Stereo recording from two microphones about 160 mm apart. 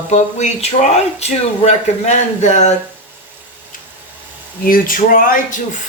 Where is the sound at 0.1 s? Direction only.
45° left (ahead or behind).